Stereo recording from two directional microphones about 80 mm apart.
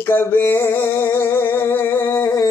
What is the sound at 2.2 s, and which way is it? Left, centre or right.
Humming, left.